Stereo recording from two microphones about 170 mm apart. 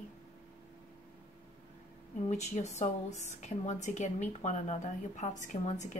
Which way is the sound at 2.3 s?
40° left (ahead or behind).